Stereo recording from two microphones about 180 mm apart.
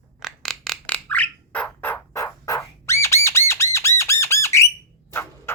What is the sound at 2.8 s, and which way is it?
Squawk, 15° left (ahead or behind).